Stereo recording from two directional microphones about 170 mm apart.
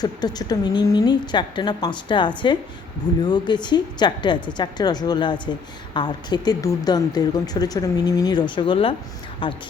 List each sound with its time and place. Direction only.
0.0 s speech: 25° left (ahead or behind)